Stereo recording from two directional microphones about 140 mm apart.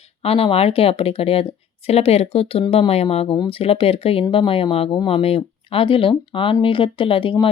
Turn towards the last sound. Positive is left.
turn(degrees=40)  # may be behind; listen again after turning